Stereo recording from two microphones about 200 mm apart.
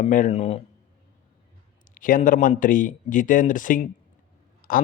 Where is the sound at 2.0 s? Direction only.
40° left (ahead or behind).